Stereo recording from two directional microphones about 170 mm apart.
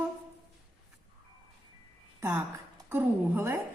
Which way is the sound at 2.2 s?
15° right (ahead or behind).